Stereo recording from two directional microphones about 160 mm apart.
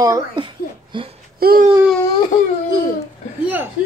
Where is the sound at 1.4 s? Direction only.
70° right (ahead or behind).